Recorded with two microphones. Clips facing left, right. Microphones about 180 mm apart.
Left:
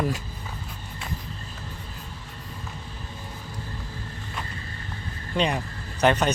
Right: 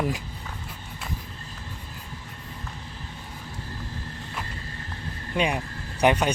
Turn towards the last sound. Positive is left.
turn(degrees=-10)  # may be behind; listen again after turning